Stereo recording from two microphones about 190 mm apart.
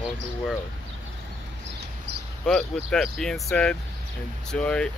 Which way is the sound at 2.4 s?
5° left (ahead or behind).